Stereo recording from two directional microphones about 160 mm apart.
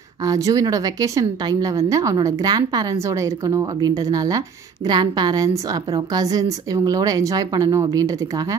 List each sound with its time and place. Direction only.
0.2 s a woman's voice: 20° right (ahead or behind)